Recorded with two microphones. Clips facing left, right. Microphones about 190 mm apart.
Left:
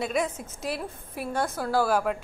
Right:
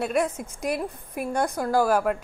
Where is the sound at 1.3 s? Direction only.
15° right (ahead or behind).